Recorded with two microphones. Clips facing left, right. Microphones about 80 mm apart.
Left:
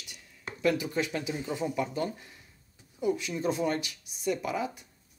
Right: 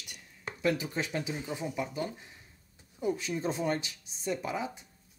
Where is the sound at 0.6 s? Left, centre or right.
Right.